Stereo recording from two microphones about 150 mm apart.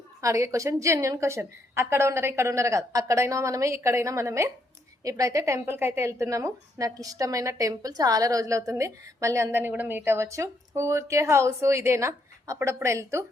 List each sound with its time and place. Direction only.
0.2 s a woman's voice: 20° right (ahead or behind)